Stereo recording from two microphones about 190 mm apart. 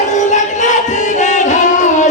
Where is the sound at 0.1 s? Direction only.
40° left (ahead or behind).